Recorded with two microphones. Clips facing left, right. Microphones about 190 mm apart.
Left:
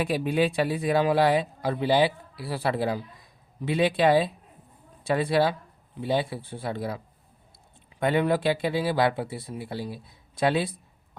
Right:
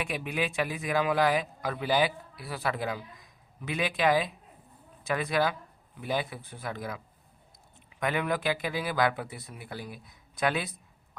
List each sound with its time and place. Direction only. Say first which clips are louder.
0.0 s a man's voice: left 8 dB; 35° left (ahead or behind)